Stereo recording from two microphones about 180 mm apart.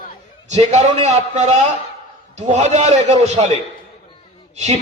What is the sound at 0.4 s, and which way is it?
A man's voice, 40° right (ahead or behind).